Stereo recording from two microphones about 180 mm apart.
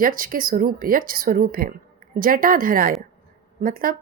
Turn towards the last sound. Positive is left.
turn(degrees=-50)  # may be behind; listen again after turning